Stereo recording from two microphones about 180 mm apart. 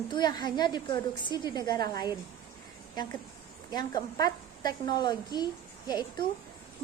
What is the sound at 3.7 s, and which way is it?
A woman's voice, 20° left (ahead or behind).